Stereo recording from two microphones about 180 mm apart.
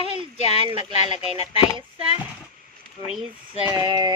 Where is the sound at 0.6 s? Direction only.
30° right (ahead or behind).